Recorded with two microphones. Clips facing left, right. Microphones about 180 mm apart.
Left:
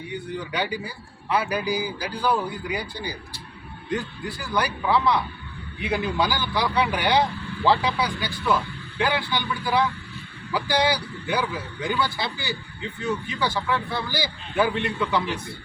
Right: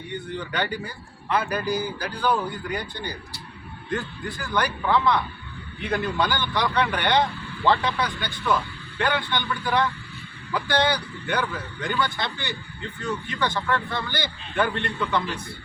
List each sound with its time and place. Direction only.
0.1 s speech: 5° left (ahead or behind)